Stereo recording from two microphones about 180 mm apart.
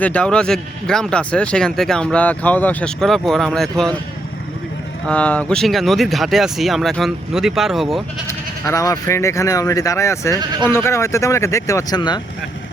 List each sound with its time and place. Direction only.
0.0 s speech: 5° left (ahead or behind)
5.0 s speech: 10° left (ahead or behind)
8.3 s speech: 15° left (ahead or behind)